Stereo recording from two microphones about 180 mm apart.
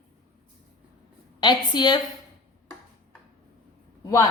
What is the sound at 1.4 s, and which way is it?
Speech, 25° left (ahead or behind).